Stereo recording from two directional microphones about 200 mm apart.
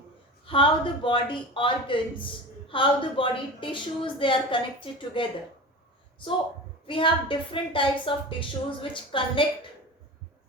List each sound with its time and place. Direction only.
0.4 s speech: 25° left (ahead or behind)
6.8 s speech: 25° left (ahead or behind)